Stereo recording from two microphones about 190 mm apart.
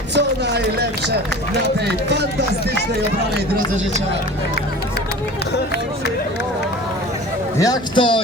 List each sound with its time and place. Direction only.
0.1 s speech: 65° right (ahead or behind)
7.6 s a man's voice: 25° left (ahead or behind)